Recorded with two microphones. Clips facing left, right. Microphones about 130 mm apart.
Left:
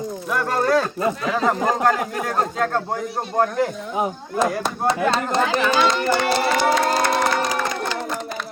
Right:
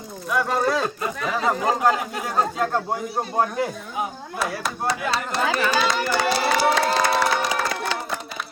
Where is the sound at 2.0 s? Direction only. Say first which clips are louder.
Left 4 dB; 50° left (ahead or behind).